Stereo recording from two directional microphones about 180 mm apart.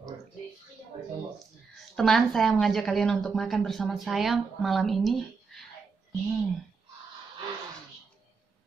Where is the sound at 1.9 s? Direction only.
Centre (ahead or behind).